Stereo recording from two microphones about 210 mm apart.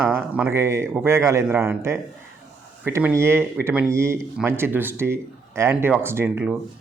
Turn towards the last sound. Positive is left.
turn(degrees=-10)  # may be behind; listen again after turning